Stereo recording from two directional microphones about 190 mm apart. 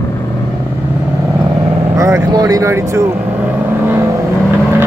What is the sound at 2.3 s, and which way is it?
Speech, 20° right (ahead or behind).